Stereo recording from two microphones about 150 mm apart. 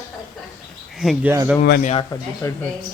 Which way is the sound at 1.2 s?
20° right (ahead or behind).